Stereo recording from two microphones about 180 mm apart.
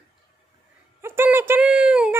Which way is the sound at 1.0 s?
10° right (ahead or behind).